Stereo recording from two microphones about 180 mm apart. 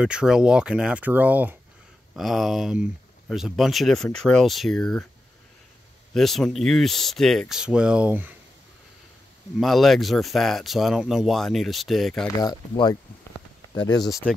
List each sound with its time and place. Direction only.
0.0 s speech: 5° right (ahead or behind)
6.1 s speech: centre (ahead or behind)
9.6 s speech: centre (ahead or behind)
12.4 s speech: 20° left (ahead or behind)